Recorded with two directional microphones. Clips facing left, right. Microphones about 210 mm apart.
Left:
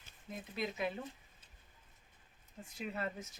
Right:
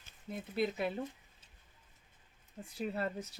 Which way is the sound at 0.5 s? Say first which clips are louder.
Right 5 dB; 35° right (ahead or behind).